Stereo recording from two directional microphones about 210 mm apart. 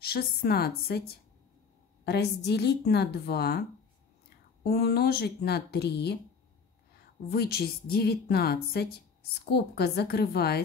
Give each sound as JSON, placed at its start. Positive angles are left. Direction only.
{"t": 0.0, "sound": "a woman's voice", "side_deg": 50}
{"t": 4.6, "sound": "a woman's voice", "side_deg": 50}
{"t": 7.2, "sound": "a woman's voice", "side_deg": 50}